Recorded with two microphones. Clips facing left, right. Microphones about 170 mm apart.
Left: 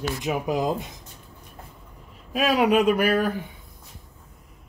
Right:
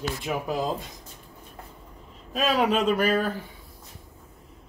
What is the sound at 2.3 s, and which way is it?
Speech, 10° left (ahead or behind).